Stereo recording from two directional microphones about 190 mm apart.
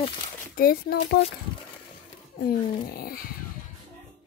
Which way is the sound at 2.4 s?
55° left (ahead or behind).